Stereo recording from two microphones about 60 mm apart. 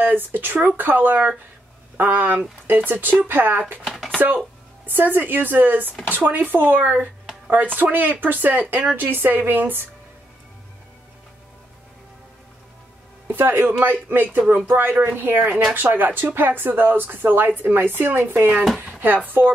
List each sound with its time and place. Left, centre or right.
0.0 s speech: right
4.8 s speech: right
13.3 s a woman's voice: right